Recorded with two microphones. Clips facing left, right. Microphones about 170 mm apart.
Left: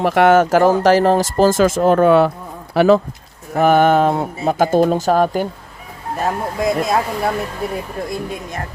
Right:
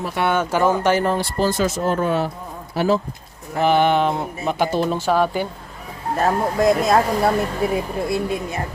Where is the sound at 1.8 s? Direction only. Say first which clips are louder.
Left 11 dB; 65° left (ahead or behind).